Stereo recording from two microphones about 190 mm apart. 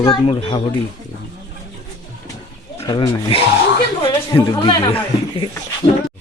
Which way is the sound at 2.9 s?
25° left (ahead or behind).